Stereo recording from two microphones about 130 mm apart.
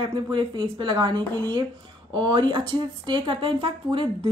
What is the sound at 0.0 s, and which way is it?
Speech, 40° right (ahead or behind).